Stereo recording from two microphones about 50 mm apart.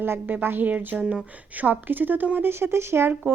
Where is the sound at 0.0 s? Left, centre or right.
Right.